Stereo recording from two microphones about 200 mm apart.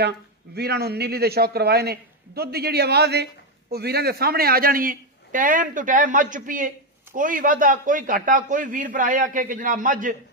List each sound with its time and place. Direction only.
0.6 s a man's voice: 55° right (ahead or behind)